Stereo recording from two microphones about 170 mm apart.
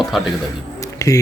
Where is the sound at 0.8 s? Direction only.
20° left (ahead or behind).